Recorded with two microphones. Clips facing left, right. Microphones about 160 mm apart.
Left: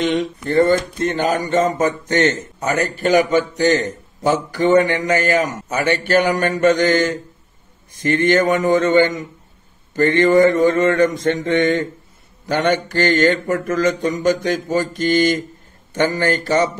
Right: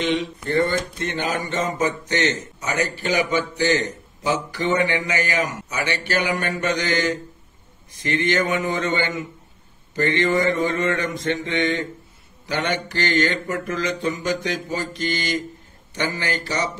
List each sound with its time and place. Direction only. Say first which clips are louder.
0.0 s a man's voice: left 4 dB; 50° left (ahead or behind)